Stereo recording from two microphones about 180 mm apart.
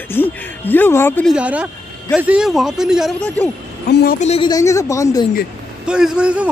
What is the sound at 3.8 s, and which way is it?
Speech, 65° left (ahead or behind).